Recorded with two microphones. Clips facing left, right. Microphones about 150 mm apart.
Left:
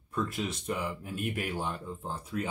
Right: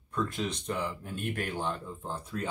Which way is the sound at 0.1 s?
5° left (ahead or behind).